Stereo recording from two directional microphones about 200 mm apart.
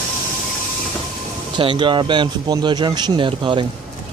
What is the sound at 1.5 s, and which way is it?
Speech, 25° right (ahead or behind).